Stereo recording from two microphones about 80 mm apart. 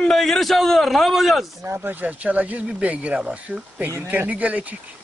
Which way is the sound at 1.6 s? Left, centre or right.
Right.